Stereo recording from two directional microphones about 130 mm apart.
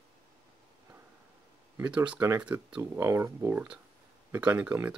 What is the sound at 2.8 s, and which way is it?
Speech, 25° right (ahead or behind).